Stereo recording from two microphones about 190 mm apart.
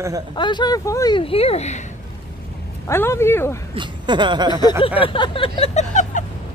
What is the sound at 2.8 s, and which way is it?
Speech, 15° left (ahead or behind).